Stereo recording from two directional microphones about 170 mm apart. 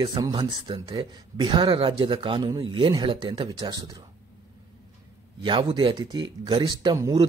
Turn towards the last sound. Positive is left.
turn(degrees=-25)  # may be behind; listen again after turning